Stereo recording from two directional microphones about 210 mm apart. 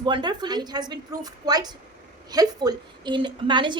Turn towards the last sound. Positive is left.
turn(degrees=-20)  # may be behind; listen again after turning